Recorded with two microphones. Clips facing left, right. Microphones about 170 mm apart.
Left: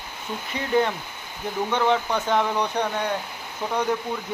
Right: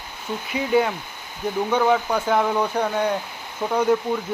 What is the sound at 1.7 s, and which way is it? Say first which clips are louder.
A man's voice: right 2 dB; 5° right (ahead or behind).